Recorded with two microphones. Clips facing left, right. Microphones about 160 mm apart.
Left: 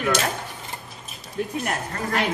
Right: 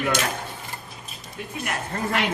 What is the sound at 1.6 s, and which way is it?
Speech, 40° left (ahead or behind).